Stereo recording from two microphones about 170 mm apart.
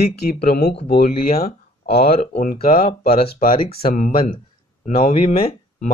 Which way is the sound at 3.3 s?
55° left (ahead or behind).